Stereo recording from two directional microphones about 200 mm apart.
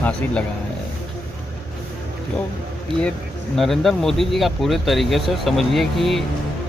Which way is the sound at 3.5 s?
Centre (ahead or behind).